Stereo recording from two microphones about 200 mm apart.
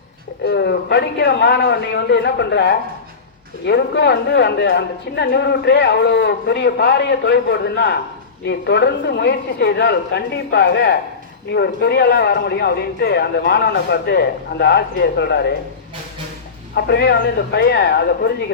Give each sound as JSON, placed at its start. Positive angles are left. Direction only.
{"t": 0.4, "sound": "speech", "side_deg": 55}
{"t": 16.7, "sound": "speech", "side_deg": 55}